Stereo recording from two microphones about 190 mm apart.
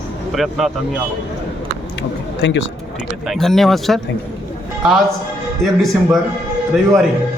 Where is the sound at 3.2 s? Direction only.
Centre (ahead or behind).